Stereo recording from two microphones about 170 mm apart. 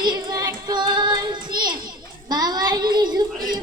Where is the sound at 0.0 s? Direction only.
25° right (ahead or behind).